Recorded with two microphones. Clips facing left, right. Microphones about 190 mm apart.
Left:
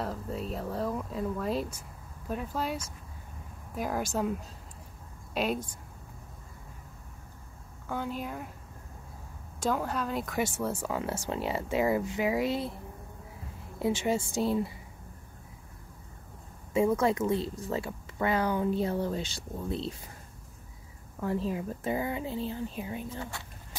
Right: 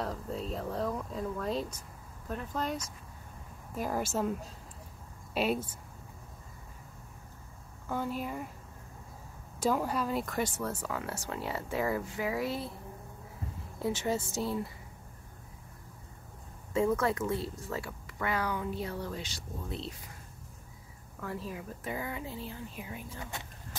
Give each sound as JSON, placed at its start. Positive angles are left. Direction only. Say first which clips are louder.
{"t": 0.0, "sound": "speech", "louder": "left 1 dB", "side_deg": 5}
{"t": 5.3, "sound": "speech", "louder": "even", "side_deg": -5}
{"t": 7.9, "sound": "speech", "louder": "even", "side_deg": 0}
{"t": 9.6, "sound": "speech", "louder": "even", "side_deg": -5}
{"t": 10.9, "sound": "speech", "louder": "left 5 dB", "side_deg": 20}
{"t": 13.7, "sound": "a woman's voice", "louder": "left 3 dB", "side_deg": 15}
{"t": 16.7, "sound": "speech", "louder": "left 3 dB", "side_deg": 15}
{"t": 21.2, "sound": "speech", "louder": "left 8 dB", "side_deg": 25}